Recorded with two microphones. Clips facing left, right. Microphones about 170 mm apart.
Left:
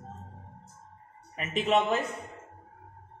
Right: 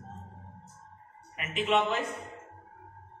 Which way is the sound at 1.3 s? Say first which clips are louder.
Left 2 dB; 40° left (ahead or behind).